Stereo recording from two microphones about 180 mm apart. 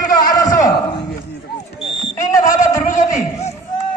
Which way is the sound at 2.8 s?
40° left (ahead or behind).